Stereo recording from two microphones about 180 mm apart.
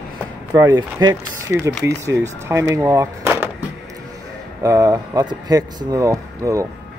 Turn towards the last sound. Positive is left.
turn(degrees=-20)  # may be behind; listen again after turning